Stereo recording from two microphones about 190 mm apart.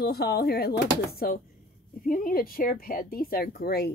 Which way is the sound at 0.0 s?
55° left (ahead or behind).